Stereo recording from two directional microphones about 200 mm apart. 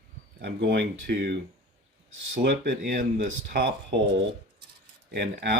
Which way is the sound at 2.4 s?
55° right (ahead or behind).